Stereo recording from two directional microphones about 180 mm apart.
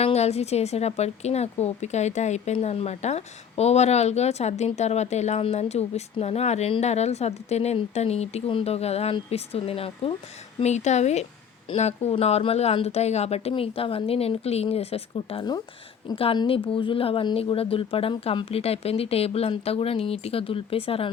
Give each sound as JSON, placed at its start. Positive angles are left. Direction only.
{"t": 0.0, "sound": "a woman's voice", "side_deg": 35}